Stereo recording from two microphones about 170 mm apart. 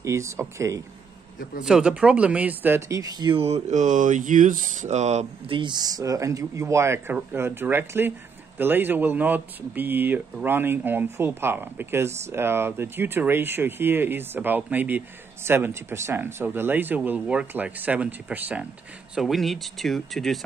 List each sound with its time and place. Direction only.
0.0 s speech: 15° right (ahead or behind)
1.6 s speech: 5° right (ahead or behind); by 5.6 s 40° right (ahead or behind)
5.6 s speech: 25° right (ahead or behind); by 20.3 s centre (ahead or behind)